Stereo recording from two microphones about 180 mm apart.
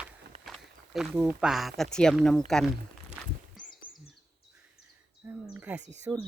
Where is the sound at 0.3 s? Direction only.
35° right (ahead or behind).